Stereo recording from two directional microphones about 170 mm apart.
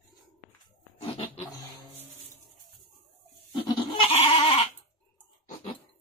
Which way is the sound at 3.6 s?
30° left (ahead or behind).